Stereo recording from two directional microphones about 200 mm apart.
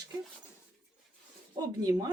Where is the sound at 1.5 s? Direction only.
20° right (ahead or behind).